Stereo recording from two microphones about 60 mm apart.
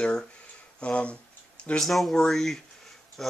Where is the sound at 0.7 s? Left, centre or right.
Centre.